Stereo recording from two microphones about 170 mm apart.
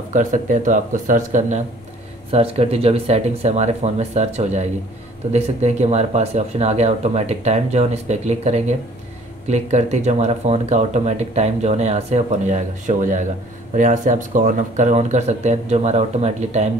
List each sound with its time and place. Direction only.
0.1 s speech: 50° right (ahead or behind)
2.3 s speech: 35° right (ahead or behind)